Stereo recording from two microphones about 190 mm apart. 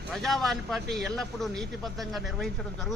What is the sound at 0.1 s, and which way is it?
Speech, centre (ahead or behind).